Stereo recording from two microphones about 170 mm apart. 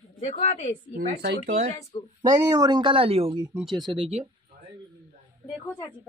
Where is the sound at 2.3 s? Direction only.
20° right (ahead or behind).